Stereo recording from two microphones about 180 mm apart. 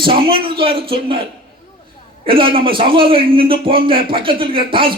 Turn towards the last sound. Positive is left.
turn(degrees=-30)  # may be behind; listen again after turning